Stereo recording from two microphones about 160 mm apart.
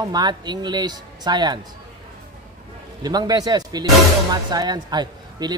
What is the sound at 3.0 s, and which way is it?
Speech, 25° right (ahead or behind).